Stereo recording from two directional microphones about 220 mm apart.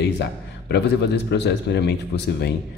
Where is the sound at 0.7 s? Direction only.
50° left (ahead or behind).